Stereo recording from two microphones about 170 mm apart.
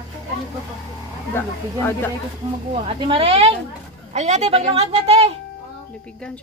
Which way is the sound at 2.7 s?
35° right (ahead or behind).